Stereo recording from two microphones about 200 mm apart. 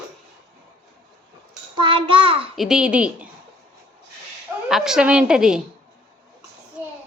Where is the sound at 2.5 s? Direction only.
Centre (ahead or behind).